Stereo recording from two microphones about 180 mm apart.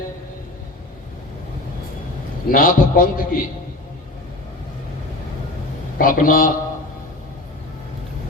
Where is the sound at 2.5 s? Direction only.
50° left (ahead or behind).